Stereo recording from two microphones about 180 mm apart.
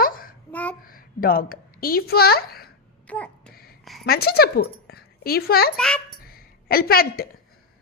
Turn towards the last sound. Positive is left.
turn(degrees=55)  # may be behind; listen again after turning